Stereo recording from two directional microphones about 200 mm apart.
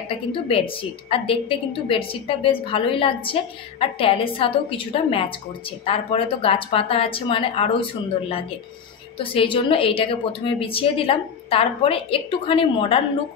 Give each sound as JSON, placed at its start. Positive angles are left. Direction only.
{"t": 0.1, "sound": "a woman's voice", "side_deg": 30}
{"t": 9.2, "sound": "a woman's voice", "side_deg": 25}